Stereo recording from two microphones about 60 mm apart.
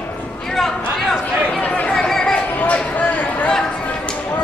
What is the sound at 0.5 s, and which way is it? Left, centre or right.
Chatter, centre.